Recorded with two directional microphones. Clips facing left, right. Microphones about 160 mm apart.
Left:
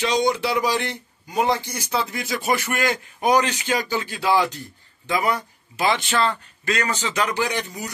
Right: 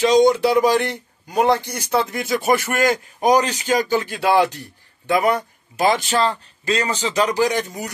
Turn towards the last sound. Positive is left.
turn(degrees=-45)  # may be behind; listen again after turning